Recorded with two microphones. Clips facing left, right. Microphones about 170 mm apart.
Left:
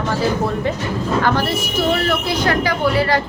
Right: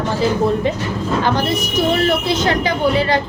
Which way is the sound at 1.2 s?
20° right (ahead or behind).